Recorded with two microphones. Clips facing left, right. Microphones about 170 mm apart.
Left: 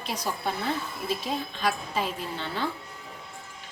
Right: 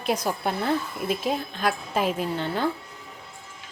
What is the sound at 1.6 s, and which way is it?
A woman's voice, 50° right (ahead or behind).